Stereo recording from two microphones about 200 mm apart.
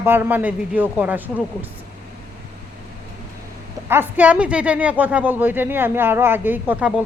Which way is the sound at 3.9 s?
10° right (ahead or behind).